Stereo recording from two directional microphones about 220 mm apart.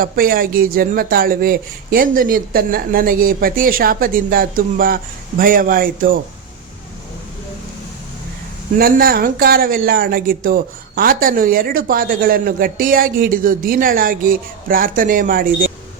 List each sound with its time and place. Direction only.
0.0 s speech: 40° right (ahead or behind)
8.8 s speech: 45° right (ahead or behind)